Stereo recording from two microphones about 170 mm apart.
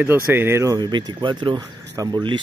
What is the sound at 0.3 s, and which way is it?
Speech, 15° right (ahead or behind).